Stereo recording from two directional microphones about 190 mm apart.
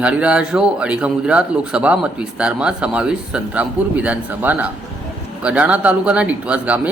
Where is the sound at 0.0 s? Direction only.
5° right (ahead or behind).